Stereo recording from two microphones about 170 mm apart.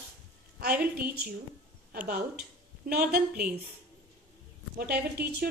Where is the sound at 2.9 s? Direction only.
60° right (ahead or behind).